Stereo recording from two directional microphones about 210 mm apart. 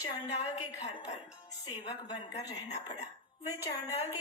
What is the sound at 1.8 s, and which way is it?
Speech, 30° left (ahead or behind).